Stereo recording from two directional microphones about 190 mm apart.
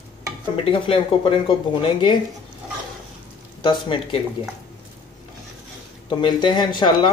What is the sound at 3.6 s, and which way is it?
Speech, 25° left (ahead or behind).